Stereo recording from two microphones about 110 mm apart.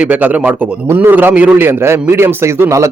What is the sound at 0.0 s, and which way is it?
A man's voice, 15° right (ahead or behind).